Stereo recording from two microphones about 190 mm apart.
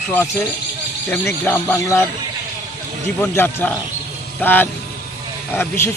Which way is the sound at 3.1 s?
10° left (ahead or behind).